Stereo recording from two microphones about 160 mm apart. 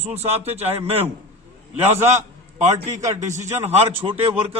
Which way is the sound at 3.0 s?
20° right (ahead or behind).